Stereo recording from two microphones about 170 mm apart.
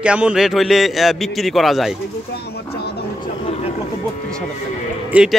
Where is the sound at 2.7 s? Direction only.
70° left (ahead or behind).